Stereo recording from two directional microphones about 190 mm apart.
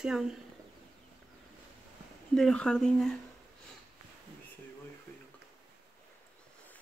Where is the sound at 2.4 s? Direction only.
5° left (ahead or behind).